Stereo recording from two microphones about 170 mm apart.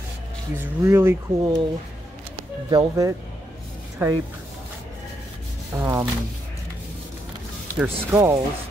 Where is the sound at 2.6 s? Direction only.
20° right (ahead or behind).